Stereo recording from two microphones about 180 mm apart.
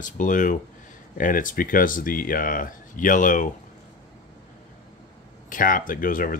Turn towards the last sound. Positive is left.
turn(degrees=50)  # may be behind; listen again after turning